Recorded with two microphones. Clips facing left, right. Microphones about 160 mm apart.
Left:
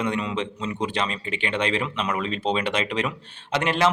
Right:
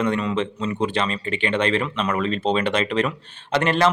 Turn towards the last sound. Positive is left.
turn(degrees=10)  # may be behind; listen again after turning